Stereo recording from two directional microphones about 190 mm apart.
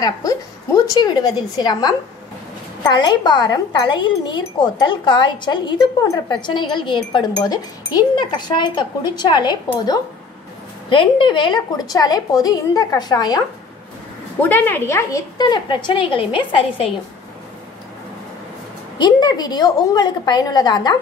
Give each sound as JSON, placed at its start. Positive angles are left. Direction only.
{"t": 0.0, "sound": "speech", "side_deg": 20}
{"t": 10.9, "sound": "speech", "side_deg": 25}
{"t": 14.4, "sound": "speech", "side_deg": 10}
{"t": 18.9, "sound": "speech", "side_deg": 25}